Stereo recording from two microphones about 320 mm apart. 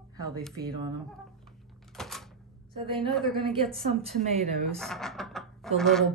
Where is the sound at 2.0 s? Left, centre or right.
Centre.